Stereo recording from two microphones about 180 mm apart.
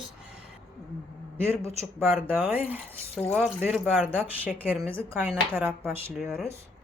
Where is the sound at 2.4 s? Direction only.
10° right (ahead or behind).